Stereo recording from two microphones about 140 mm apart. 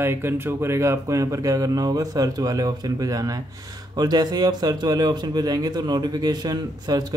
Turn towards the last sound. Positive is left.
turn(degrees=-30)  # may be behind; listen again after turning